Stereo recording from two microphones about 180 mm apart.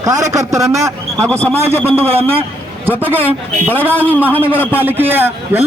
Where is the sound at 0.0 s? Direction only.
20° right (ahead or behind).